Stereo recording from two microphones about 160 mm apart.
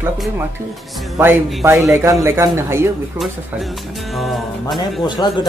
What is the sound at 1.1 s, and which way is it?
Speech, 15° right (ahead or behind).